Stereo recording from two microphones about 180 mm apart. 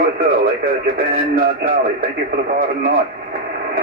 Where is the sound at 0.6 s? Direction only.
50° right (ahead or behind).